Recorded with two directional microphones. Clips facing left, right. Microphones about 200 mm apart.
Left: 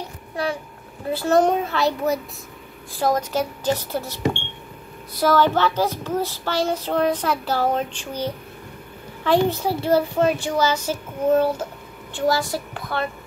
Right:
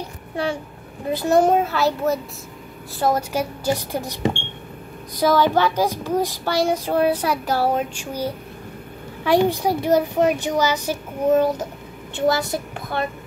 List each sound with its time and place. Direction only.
1.1 s a child's voice: 15° right (ahead or behind)